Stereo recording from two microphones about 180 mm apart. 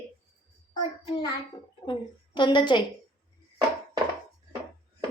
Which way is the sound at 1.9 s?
25° left (ahead or behind).